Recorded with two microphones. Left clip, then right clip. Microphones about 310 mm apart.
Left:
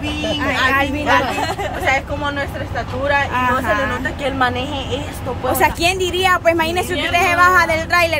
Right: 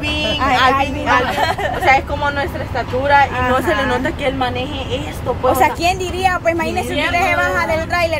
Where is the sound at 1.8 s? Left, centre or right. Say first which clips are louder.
Right 5 dB; right.